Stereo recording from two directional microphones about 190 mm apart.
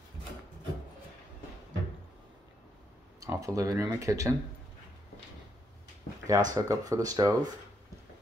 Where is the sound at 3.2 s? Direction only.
15° right (ahead or behind).